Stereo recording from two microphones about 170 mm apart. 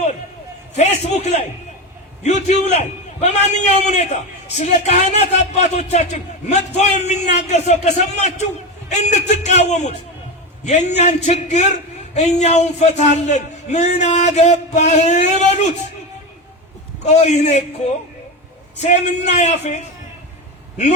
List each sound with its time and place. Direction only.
0.8 s a man's voice: 40° left (ahead or behind)
17.0 s a man's voice: 40° left (ahead or behind)
18.8 s a man's voice: 45° left (ahead or behind)